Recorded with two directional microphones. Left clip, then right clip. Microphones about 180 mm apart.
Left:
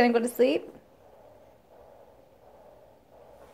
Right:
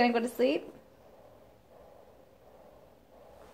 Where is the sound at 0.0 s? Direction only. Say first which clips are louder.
Left 4 dB; 45° left (ahead or behind).